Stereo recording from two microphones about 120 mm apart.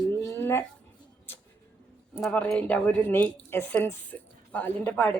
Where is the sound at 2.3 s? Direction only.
10° left (ahead or behind).